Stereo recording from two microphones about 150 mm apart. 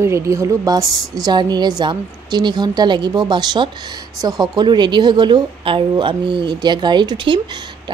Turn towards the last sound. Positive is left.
turn(degrees=-30)  # may be behind; listen again after turning